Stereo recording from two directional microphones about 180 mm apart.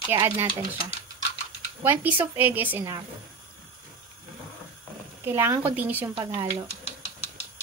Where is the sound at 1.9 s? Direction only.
10° right (ahead or behind).